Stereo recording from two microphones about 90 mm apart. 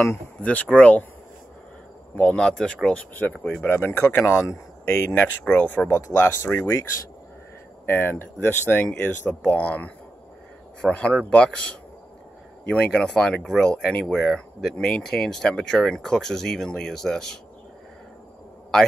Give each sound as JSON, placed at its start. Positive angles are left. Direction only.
{"t": 0.4, "sound": "speech", "side_deg": 15}
{"t": 2.1, "sound": "speech", "side_deg": 10}
{"t": 5.1, "sound": "speech", "side_deg": 20}